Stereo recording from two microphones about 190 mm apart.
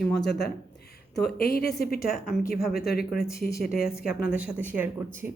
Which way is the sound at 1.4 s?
50° left (ahead or behind).